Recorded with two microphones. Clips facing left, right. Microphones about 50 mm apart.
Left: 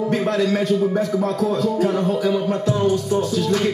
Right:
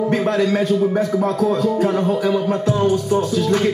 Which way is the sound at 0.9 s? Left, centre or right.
Right.